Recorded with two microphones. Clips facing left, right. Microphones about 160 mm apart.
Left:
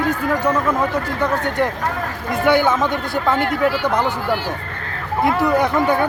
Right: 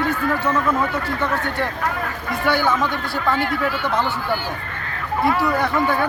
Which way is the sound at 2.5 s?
20° left (ahead or behind).